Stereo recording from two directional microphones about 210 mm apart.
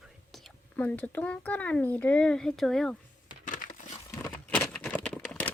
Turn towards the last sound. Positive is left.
turn(degrees=5)  # may be behind; listen again after turning